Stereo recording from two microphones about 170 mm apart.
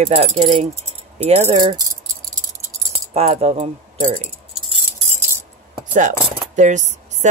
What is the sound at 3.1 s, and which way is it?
A woman's voice, 35° right (ahead or behind).